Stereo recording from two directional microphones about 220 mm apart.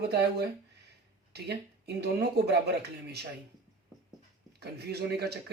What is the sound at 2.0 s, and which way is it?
Speech, 50° right (ahead or behind).